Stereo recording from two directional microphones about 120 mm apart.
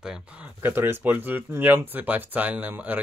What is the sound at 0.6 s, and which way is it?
Speech, 20° right (ahead or behind).